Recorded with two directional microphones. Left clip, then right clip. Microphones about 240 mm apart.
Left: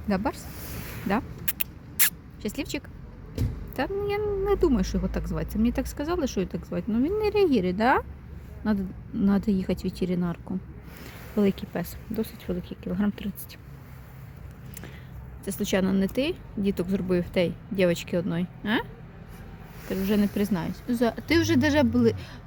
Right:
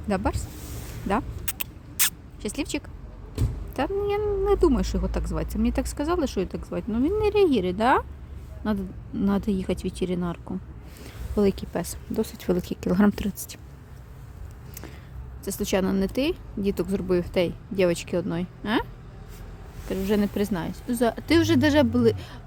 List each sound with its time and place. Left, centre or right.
0.1 s speech: centre
1.0 s vehicle: centre
3.8 s speech: centre
12.4 s speech: right
15.4 s speech: centre
19.9 s speech: centre